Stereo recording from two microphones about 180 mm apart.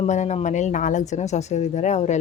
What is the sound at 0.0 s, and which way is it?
Speech, 40° left (ahead or behind).